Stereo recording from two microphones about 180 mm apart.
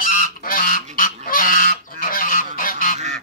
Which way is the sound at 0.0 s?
50° left (ahead or behind).